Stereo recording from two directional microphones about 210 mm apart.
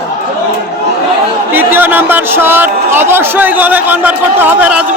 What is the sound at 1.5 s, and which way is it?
Speech, 10° right (ahead or behind).